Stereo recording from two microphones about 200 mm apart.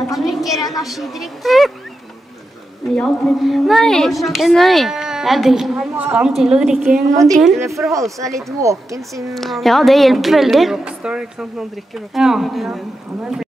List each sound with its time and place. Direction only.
0.0 s a sound: centre (ahead or behind)
0.7 s a woman's voice: centre (ahead or behind)
3.0 s a woman's voice: centre (ahead or behind)
7.9 s speech: 15° right (ahead or behind)
9.3 s a woman's voice: centre (ahead or behind)